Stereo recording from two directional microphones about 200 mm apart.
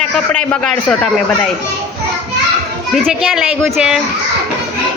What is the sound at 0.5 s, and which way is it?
Speech, 5° left (ahead or behind).